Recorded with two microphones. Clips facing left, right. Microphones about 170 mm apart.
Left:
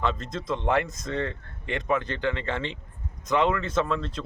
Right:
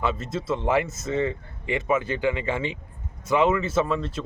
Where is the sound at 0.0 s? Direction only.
5° right (ahead or behind).